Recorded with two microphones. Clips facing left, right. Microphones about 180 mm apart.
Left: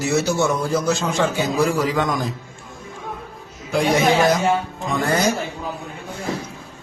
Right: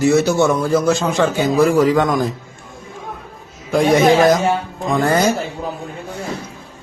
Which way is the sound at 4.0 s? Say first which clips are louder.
Right 4 dB; 50° right (ahead or behind).